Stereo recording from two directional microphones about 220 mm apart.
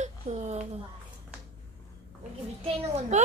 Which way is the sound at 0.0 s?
30° right (ahead or behind).